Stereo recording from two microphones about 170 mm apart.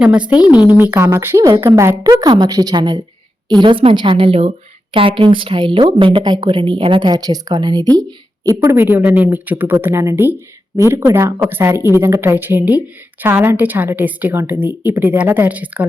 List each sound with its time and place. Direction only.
0.0 s a woman's voice: 5° right (ahead or behind)